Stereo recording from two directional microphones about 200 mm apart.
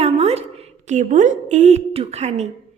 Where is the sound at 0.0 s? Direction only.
30° right (ahead or behind).